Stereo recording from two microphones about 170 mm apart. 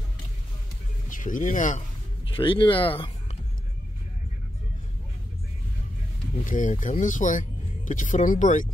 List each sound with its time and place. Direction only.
1.0 s speech: 50° left (ahead or behind)
2.2 s speech: 30° left (ahead or behind)
6.4 s speech: 50° left (ahead or behind)